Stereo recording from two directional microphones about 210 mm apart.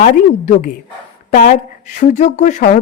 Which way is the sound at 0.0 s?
35° left (ahead or behind).